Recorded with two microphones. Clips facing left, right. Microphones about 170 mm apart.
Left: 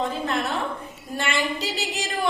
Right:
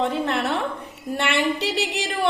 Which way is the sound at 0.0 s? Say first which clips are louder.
Right 3 dB; 65° right (ahead or behind).